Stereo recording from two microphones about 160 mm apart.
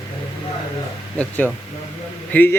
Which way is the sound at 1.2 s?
10° left (ahead or behind).